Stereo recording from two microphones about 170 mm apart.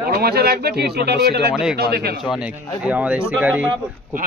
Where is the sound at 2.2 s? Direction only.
5° right (ahead or behind).